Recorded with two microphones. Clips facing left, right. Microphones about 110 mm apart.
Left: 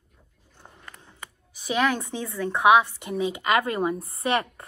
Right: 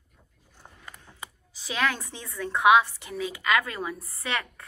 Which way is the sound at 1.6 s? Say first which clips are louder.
Left 4 dB; 15° left (ahead or behind).